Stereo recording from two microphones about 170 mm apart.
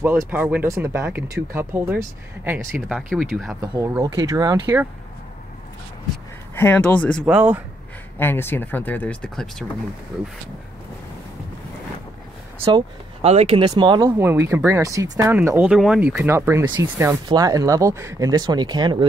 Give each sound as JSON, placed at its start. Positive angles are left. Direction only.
{"t": 0.0, "sound": "speech", "side_deg": -10}
{"t": 2.9, "sound": "speech", "side_deg": 0}
{"t": 3.6, "sound": "speech", "side_deg": -20}
{"t": 6.5, "sound": "speech", "side_deg": 10}
{"t": 7.2, "sound": "speech", "side_deg": -10}
{"t": 8.2, "sound": "speech", "side_deg": 15}
{"t": 12.6, "sound": "speech", "side_deg": -35}
{"t": 14.1, "sound": "speech", "side_deg": -15}